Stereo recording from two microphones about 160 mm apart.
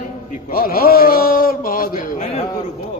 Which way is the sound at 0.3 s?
60° left (ahead or behind).